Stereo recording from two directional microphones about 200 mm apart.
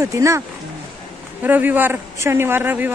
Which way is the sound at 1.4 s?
10° right (ahead or behind).